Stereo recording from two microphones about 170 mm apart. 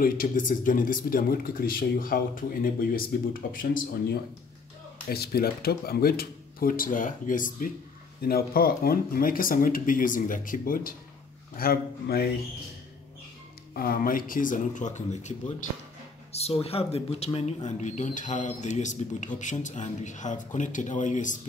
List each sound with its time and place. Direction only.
0.0 s speech: 50° left (ahead or behind)
5.0 s speech: 65° left (ahead or behind)
13.7 s speech: 60° left (ahead or behind)